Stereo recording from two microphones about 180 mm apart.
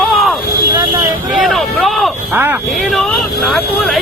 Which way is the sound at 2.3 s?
10° right (ahead or behind).